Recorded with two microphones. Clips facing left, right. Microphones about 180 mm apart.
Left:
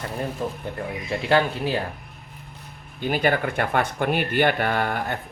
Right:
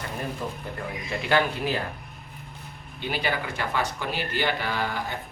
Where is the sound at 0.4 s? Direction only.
30° left (ahead or behind).